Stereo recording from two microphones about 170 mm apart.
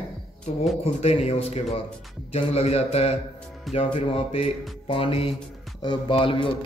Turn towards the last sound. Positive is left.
turn(degrees=30)  # may be behind; listen again after turning